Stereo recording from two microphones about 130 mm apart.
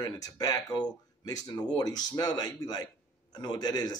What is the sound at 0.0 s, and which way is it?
A man's voice, 30° left (ahead or behind).